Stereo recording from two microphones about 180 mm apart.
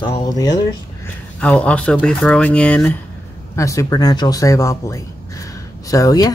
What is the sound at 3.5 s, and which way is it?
Speech, 20° left (ahead or behind).